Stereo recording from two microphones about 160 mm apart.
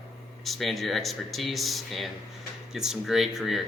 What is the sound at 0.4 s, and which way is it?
Speech, centre (ahead or behind).